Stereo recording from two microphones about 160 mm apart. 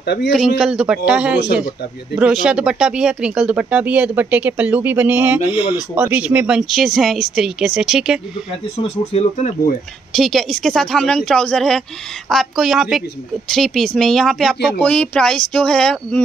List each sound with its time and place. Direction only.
0.0 s a man's voice: 90° left
0.3 s speech: centre (ahead or behind)
8.7 s speech: 40° left (ahead or behind)
10.1 s speech: centre (ahead or behind)